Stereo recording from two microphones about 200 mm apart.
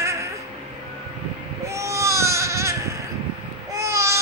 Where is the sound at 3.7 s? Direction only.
15° right (ahead or behind).